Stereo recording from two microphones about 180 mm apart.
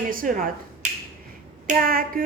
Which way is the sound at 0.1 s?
50° right (ahead or behind).